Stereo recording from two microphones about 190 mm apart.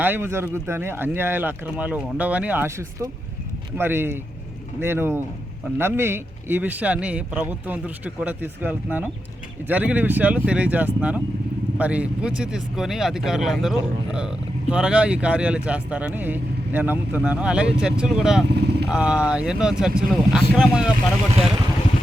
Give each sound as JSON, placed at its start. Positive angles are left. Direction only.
{"t": 0.0, "sound": "speech", "side_deg": -10}
{"t": 18.5, "sound": "vehicle", "side_deg": -60}
{"t": 18.9, "sound": "speech", "side_deg": -5}